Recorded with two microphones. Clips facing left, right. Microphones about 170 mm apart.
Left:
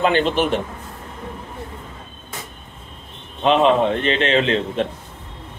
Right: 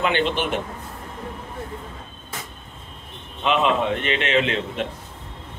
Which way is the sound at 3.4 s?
35° left (ahead or behind).